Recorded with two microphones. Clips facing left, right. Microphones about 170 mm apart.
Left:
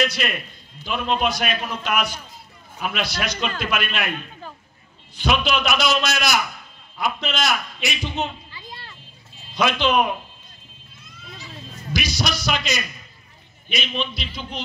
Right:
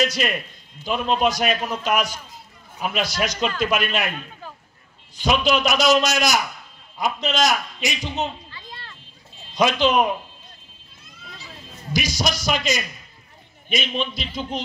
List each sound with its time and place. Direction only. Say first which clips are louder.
0.0 s a man's voice: right 1 dB; 40° right (ahead or behind)
5.1 s a man's voice: right 2 dB; 40° right (ahead or behind)
8.5 s a sound: left 1 dB; 10° left (ahead or behind)
9.6 s a man's voice: right 1 dB; 40° right (ahead or behind)
11.9 s a man's voice: right 1 dB; 45° right (ahead or behind)